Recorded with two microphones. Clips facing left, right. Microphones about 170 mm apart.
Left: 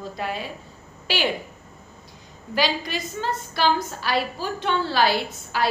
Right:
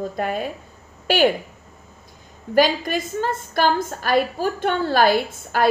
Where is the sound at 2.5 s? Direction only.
50° right (ahead or behind).